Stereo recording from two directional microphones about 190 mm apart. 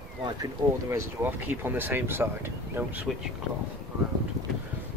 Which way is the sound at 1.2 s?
10° right (ahead or behind).